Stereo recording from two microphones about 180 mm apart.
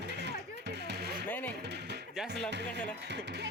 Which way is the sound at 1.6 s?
70° right (ahead or behind).